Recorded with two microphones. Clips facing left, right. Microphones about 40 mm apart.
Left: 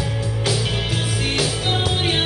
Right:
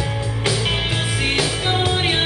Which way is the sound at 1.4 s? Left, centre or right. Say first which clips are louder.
Even; right.